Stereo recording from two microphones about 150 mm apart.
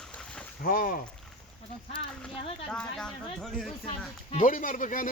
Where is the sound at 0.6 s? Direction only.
70° left (ahead or behind).